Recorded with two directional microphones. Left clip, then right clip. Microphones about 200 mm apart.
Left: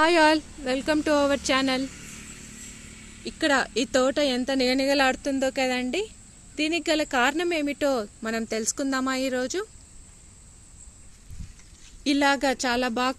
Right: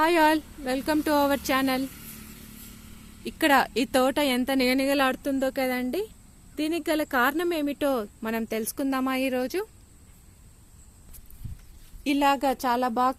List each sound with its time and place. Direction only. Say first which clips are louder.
0.0 s speech: left 2 dB; 5° right (ahead or behind)
3.2 s speech: right 2 dB; 30° right (ahead or behind)
12.0 s a woman's voice: left 1 dB; centre (ahead or behind)